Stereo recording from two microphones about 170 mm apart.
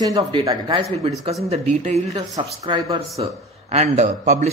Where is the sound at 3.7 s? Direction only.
40° right (ahead or behind).